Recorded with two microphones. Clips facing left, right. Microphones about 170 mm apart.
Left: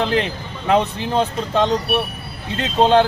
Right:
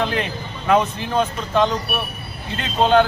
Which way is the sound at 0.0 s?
30° left (ahead or behind).